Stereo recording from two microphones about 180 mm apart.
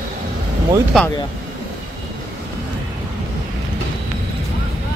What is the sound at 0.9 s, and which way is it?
Speech, centre (ahead or behind).